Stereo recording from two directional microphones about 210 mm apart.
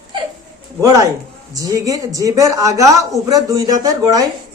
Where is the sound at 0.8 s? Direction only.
15° right (ahead or behind).